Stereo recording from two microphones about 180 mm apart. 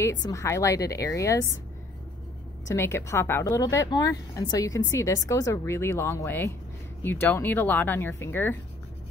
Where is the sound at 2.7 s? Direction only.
15° left (ahead or behind).